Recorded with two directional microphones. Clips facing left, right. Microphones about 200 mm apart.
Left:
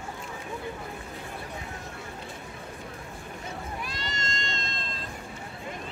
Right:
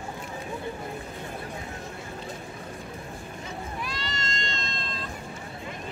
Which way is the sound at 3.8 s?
45° left (ahead or behind).